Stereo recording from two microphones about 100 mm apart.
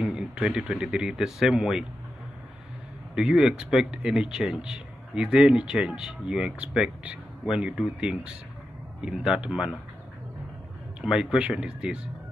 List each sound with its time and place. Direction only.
0.0 s speech: 5° right (ahead or behind)
3.2 s speech: 5° right (ahead or behind)
11.0 s speech: 10° right (ahead or behind)